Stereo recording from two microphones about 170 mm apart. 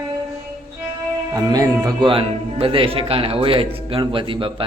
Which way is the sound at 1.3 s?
20° right (ahead or behind).